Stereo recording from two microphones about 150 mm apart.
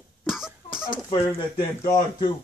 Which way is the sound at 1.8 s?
25° left (ahead or behind).